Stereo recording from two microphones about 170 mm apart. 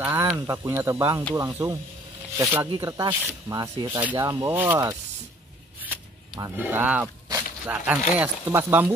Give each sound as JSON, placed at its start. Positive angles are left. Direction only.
{"t": 0.0, "sound": "speech", "side_deg": -10}
{"t": 6.4, "sound": "speech", "side_deg": -10}